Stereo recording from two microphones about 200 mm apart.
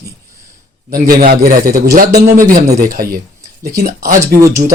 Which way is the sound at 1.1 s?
45° right (ahead or behind).